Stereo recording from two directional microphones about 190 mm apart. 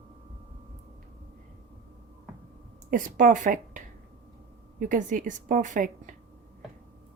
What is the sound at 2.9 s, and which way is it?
A woman's voice, 45° right (ahead or behind).